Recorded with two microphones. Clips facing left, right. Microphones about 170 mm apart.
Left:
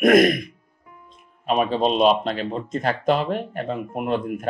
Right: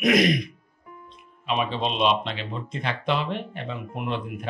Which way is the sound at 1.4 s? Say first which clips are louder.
Left 6 dB; 45° left (ahead or behind).